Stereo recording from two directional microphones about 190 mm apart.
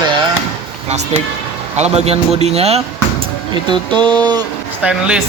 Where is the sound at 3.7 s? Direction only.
25° right (ahead or behind).